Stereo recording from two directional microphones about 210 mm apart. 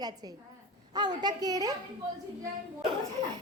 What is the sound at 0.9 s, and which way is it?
Speech, 20° right (ahead or behind).